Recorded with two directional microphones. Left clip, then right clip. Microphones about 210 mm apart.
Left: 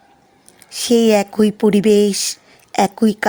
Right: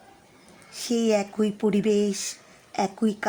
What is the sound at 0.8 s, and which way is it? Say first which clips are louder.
A woman's voice: left 10 dB; 30° left (ahead or behind).